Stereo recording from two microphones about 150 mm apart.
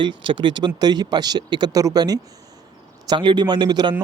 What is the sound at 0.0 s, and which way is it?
Speech, 30° right (ahead or behind).